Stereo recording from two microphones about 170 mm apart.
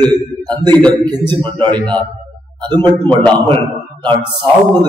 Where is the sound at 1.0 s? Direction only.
30° right (ahead or behind).